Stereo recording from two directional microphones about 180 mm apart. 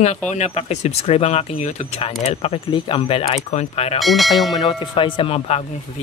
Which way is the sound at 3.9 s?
Centre (ahead or behind).